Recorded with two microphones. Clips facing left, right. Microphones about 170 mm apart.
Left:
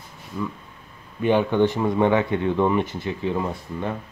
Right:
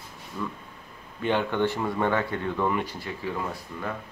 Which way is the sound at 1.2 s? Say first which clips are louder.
Left 6 dB; 15° left (ahead or behind).